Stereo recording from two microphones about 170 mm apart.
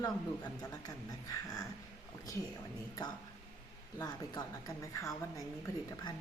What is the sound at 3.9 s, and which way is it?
Speech, 20° left (ahead or behind).